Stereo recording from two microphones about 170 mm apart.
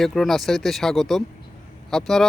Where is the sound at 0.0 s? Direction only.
Centre (ahead or behind).